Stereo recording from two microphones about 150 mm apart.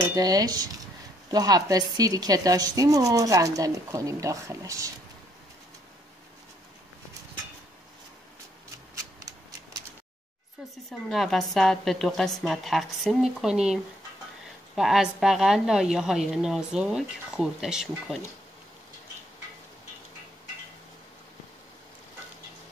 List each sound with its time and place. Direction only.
0.1 s speech: 25° right (ahead or behind)
10.9 s a woman's voice: centre (ahead or behind)
14.8 s a woman's voice: centre (ahead or behind)